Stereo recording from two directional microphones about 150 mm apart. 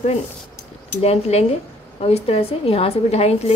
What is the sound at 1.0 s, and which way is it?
A woman's voice, 45° left (ahead or behind).